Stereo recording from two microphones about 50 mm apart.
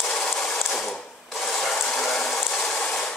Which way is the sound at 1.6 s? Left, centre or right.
Centre.